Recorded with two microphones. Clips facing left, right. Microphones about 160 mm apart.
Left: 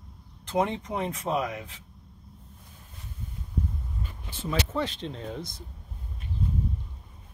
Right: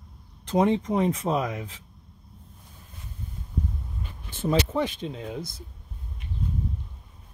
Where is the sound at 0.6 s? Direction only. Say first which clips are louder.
Right 9 dB; 30° right (ahead or behind).